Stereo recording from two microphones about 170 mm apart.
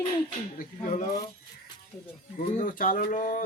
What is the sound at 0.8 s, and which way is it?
Speech, 40° left (ahead or behind).